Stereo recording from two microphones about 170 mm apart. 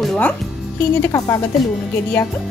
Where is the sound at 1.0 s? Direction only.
20° left (ahead or behind).